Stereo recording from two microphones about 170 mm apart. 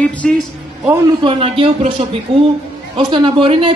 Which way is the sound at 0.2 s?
5° left (ahead or behind).